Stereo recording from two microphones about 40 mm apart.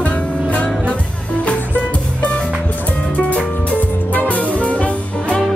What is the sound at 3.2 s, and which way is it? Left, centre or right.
Music, left.